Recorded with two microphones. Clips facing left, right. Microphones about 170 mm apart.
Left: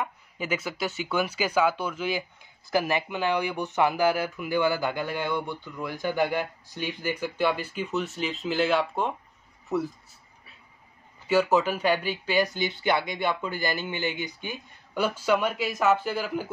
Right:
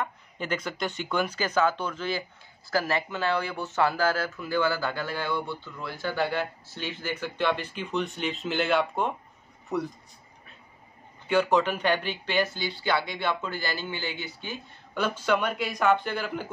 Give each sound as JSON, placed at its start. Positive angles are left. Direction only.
{"t": 0.0, "sound": "speech", "side_deg": 10}
{"t": 11.2, "sound": "speech", "side_deg": 5}